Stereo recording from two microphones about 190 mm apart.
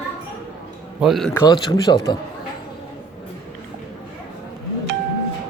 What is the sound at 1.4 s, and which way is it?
Speech, 20° left (ahead or behind).